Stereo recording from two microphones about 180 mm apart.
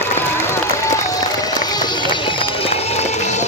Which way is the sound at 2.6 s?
35° left (ahead or behind).